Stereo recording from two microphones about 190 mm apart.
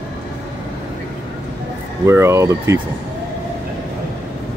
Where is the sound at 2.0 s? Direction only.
15° right (ahead or behind).